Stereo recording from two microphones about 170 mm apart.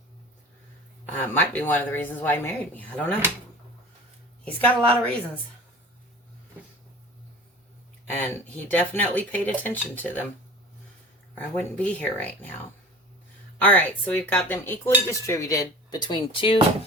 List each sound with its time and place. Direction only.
1.2 s speech: 10° left (ahead or behind)
4.4 s speech: 10° left (ahead or behind)
8.1 s speech: 10° left (ahead or behind)
11.3 s speech: 10° left (ahead or behind)
13.6 s speech: 10° left (ahead or behind); by 16.6 s 30° left (ahead or behind)